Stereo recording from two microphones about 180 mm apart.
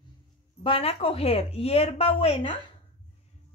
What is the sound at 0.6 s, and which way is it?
A woman's voice, 30° left (ahead or behind).